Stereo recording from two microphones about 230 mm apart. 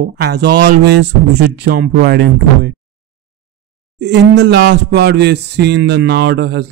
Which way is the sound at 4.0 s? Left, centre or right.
Right.